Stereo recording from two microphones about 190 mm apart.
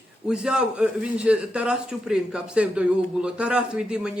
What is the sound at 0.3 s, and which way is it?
Speech, 5° right (ahead or behind).